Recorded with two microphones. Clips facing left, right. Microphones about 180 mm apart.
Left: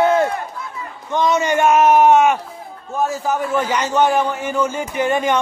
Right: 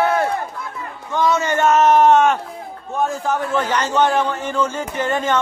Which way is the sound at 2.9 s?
5° left (ahead or behind).